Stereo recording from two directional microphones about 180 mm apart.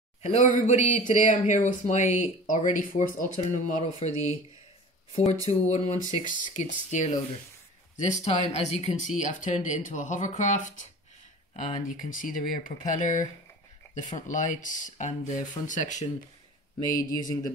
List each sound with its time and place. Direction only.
0.2 s speech: 40° left (ahead or behind)
4.1 s speech: 20° right (ahead or behind)
5.1 s speech: 40° left (ahead or behind)
12.2 s speech: 50° left (ahead or behind)
17.1 s speech: 20° left (ahead or behind)